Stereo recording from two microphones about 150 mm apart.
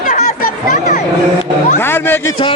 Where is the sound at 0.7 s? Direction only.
75° left (ahead or behind).